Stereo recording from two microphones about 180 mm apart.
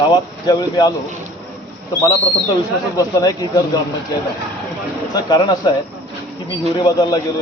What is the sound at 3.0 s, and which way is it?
Speech, 20° left (ahead or behind).